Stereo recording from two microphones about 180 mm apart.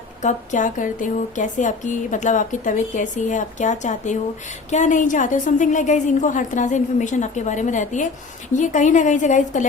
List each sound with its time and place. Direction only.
0.2 s speech: 40° left (ahead or behind)